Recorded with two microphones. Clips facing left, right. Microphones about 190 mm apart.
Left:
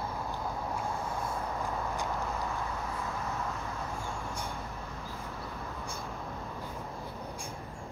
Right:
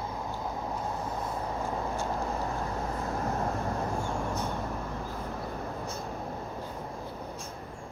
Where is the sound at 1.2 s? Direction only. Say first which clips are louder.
Right 2 dB; 25° right (ahead or behind); by 3.8 s 45° right (ahead or behind).